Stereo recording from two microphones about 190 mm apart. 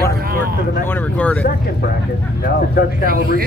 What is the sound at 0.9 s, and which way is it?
Speech, 10° left (ahead or behind).